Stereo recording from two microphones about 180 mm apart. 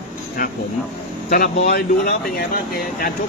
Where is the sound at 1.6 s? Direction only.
60° left (ahead or behind).